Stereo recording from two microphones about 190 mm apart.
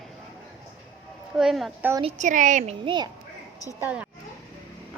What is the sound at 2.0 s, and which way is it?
A child's voice, 35° right (ahead or behind).